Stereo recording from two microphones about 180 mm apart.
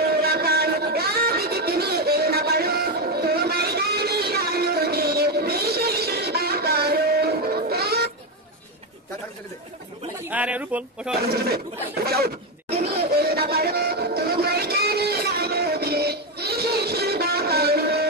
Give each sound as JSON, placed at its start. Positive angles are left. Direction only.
{"t": 0.0, "sound": "music", "side_deg": -60}
{"t": 10.3, "sound": "speech", "side_deg": -10}
{"t": 12.1, "sound": "a sound", "side_deg": -60}